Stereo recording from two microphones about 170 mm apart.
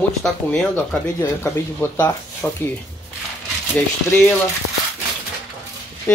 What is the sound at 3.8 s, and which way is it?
Speech, 5° left (ahead or behind).